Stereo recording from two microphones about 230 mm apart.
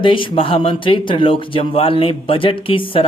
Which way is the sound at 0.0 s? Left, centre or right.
Left.